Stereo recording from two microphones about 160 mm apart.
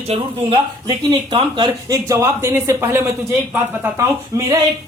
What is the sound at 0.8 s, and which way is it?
Speech, 30° right (ahead or behind).